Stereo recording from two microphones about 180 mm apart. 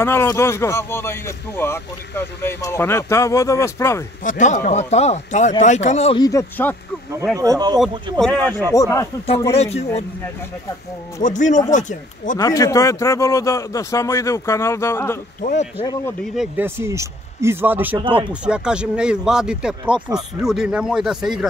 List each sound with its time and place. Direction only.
0.0 s speech: 15° left (ahead or behind)
4.2 s speech: 45° left (ahead or behind)
6.1 s speech: 20° left (ahead or behind)
7.3 s speech: 20° right (ahead or behind)
7.8 s a man's voice: centre (ahead or behind)
8.4 s speech: 20° right (ahead or behind)
8.7 s speech: 20° left (ahead or behind)
9.5 s speech: 35° left (ahead or behind)
11.2 s speech: 45° left (ahead or behind)
12.4 s speech: 20° left (ahead or behind)
15.4 s speech: 40° left (ahead or behind)
16.3 s a man's voice: 10° right (ahead or behind)
19.9 s speech: 25° right (ahead or behind)
20.4 s a man's voice: 5° right (ahead or behind)